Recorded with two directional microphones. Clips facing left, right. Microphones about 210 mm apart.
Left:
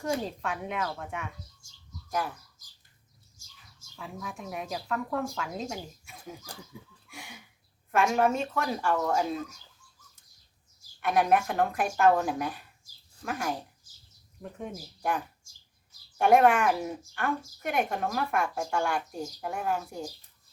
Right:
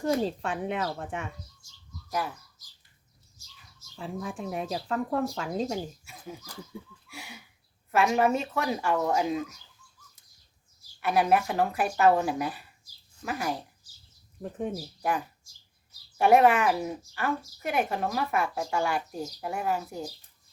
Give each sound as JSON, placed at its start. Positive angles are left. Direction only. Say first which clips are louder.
{"t": 0.0, "sound": "speech", "louder": "right 4 dB", "side_deg": -30}
{"t": 2.0, "sound": "speech", "louder": "even", "side_deg": 0}
{"t": 3.9, "sound": "speech", "louder": "right 5 dB", "side_deg": -30}
{"t": 6.1, "sound": "a woman's voice", "louder": "right 1 dB", "side_deg": 0}
{"t": 11.0, "sound": "a woman's voice", "louder": "right 1 dB", "side_deg": -5}
{"t": 16.1, "sound": "a woman's voice", "louder": "right 1 dB", "side_deg": -5}